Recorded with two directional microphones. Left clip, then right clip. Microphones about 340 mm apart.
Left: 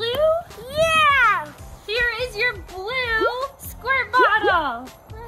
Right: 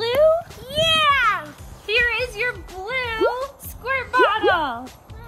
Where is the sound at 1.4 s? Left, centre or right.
Centre.